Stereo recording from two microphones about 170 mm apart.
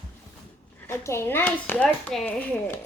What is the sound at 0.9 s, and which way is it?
Speech, 15° left (ahead or behind).